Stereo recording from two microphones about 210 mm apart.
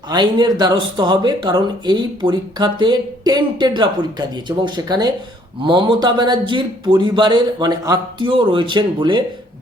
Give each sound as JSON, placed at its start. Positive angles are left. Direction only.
{"t": 0.1, "sound": "speech", "side_deg": -20}